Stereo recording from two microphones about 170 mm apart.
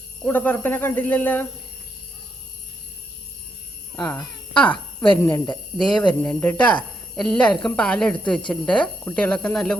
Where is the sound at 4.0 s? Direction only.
15° left (ahead or behind).